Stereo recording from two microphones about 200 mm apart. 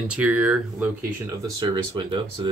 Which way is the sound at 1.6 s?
20° right (ahead or behind).